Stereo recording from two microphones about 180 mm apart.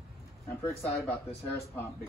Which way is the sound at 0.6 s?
15° left (ahead or behind).